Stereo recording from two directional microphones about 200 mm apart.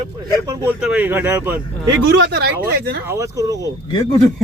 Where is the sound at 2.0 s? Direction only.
55° right (ahead or behind).